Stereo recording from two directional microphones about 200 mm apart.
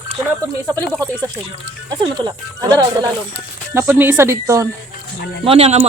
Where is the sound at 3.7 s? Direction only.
15° right (ahead or behind).